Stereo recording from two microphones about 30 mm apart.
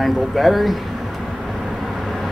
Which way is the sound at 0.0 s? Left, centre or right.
Centre.